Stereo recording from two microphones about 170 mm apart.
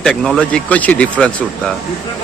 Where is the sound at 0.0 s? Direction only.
5° left (ahead or behind).